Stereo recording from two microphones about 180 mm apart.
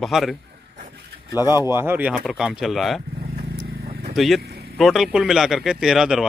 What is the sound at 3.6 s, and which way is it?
Vehicle, 65° right (ahead or behind).